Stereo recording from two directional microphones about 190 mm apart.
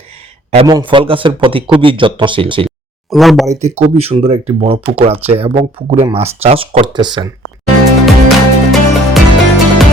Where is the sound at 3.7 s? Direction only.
35° right (ahead or behind).